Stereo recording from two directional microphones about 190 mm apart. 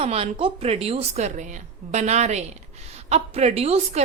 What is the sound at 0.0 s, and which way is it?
A woman's voice, 30° right (ahead or behind).